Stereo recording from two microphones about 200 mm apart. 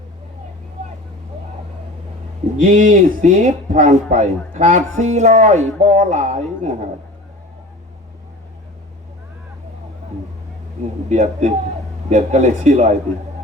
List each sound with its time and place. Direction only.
2.6 s speech: 40° right (ahead or behind)
11.1 s speech: 35° right (ahead or behind)